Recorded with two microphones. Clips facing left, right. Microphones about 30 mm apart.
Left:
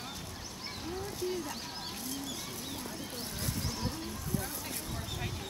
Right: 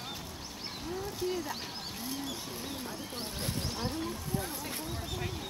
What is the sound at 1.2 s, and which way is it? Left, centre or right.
Speech, centre.